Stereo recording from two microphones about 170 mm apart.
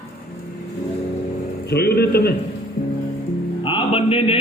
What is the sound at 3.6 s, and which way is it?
Music, 30° left (ahead or behind).